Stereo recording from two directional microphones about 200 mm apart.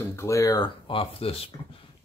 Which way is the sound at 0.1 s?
15° left (ahead or behind).